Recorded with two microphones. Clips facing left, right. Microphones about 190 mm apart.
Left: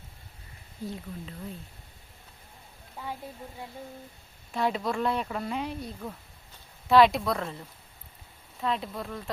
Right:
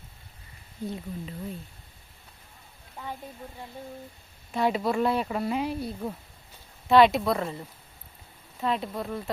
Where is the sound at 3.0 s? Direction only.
5° left (ahead or behind).